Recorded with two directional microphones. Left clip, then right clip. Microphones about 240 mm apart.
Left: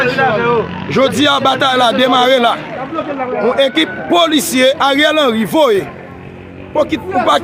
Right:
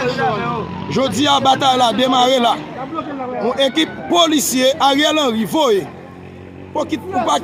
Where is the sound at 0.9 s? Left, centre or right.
Centre.